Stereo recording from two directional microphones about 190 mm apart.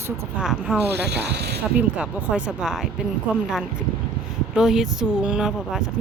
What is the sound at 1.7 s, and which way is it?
Speech, 5° right (ahead or behind).